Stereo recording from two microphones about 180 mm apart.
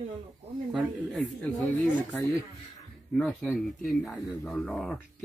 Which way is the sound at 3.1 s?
5° left (ahead or behind).